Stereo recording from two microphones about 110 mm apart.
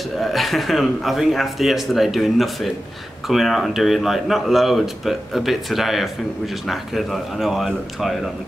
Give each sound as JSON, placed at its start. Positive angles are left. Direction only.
{"t": 0.2, "sound": "a man's voice", "side_deg": 0}